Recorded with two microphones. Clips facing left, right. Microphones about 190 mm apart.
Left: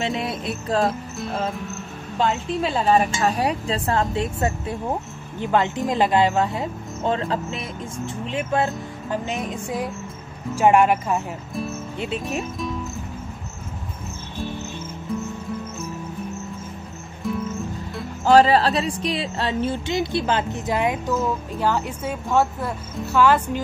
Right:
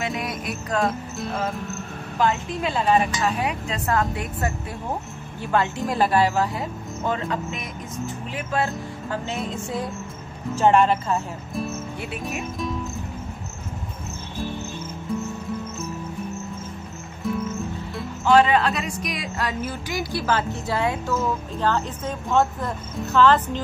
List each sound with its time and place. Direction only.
0.0 s music: 25° left (ahead or behind)
2.1 s speech: 30° left (ahead or behind); by 11.1 s 15° left (ahead or behind)
12.0 s speech: 25° left (ahead or behind)
17.2 s music: centre (ahead or behind)
18.2 s speech: 35° left (ahead or behind); by 23.6 s 10° left (ahead or behind)